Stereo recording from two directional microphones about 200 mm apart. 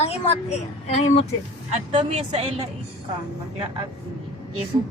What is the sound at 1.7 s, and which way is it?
Speech, 35° right (ahead or behind).